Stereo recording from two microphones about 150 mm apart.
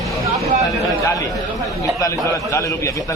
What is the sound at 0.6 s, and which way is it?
A man's voice, 20° left (ahead or behind).